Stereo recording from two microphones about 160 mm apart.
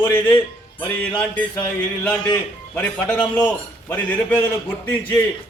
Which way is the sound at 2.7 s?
10° left (ahead or behind).